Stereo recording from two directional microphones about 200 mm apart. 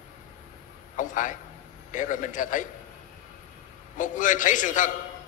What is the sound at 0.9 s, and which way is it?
A man's voice, 40° left (ahead or behind).